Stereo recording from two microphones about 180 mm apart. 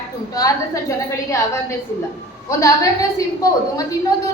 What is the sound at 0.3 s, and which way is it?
A woman's voice, 20° left (ahead or behind).